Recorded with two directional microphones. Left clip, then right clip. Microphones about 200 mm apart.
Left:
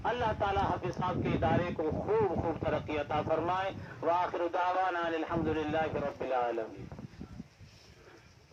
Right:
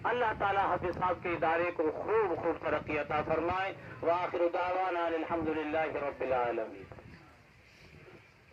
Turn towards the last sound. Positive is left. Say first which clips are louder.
# right 1 dB
turn(degrees=35)  # may be behind; listen again after turning